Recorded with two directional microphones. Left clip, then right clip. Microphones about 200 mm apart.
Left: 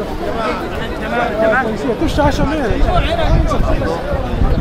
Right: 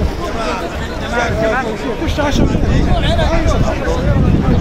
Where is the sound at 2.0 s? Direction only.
55° left (ahead or behind).